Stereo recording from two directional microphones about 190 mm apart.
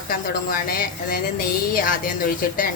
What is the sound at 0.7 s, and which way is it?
Speech, 50° left (ahead or behind).